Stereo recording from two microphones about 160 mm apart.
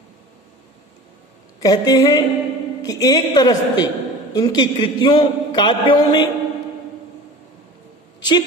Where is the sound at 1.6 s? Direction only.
25° left (ahead or behind).